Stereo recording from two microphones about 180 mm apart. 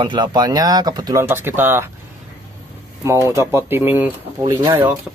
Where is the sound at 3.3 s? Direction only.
15° right (ahead or behind).